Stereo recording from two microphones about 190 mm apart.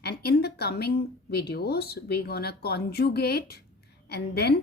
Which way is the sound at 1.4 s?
55° left (ahead or behind).